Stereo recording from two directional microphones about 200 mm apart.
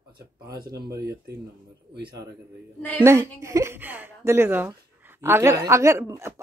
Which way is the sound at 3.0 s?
15° right (ahead or behind).